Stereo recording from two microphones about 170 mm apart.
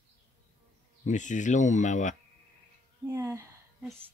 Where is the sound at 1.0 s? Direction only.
45° left (ahead or behind).